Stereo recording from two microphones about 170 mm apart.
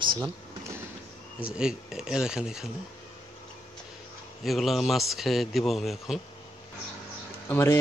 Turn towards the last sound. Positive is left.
turn(degrees=20)  # may be behind; listen again after turning